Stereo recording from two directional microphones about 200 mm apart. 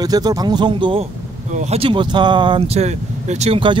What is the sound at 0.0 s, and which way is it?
Speech, 20° right (ahead or behind).